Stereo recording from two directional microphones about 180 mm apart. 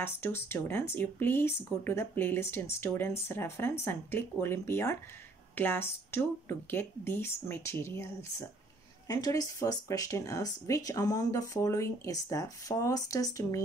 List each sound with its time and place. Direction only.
0.0 s speech: 15° left (ahead or behind)